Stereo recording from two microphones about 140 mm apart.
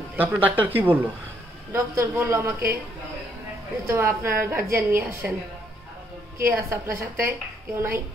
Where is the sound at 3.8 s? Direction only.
20° right (ahead or behind).